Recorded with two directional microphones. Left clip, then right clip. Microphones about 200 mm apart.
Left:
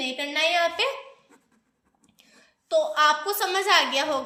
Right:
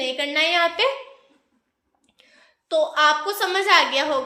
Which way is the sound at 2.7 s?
20° left (ahead or behind).